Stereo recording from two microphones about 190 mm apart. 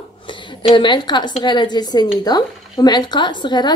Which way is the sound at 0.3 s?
25° left (ahead or behind).